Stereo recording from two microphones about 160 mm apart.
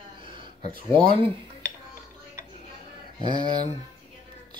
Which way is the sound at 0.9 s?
35° right (ahead or behind).